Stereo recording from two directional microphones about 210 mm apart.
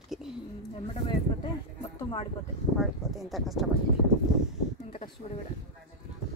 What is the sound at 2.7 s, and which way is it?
Speech, centre (ahead or behind).